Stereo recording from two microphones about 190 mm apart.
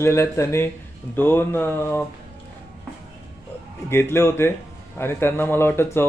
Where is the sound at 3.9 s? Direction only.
15° left (ahead or behind).